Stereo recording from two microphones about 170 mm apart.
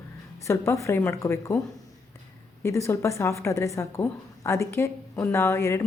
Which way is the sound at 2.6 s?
15° left (ahead or behind).